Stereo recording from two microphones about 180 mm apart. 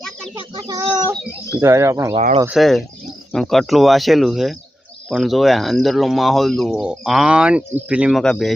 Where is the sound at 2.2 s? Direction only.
35° right (ahead or behind).